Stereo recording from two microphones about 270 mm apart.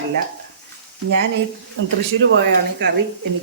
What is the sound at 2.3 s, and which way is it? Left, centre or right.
Speech, right.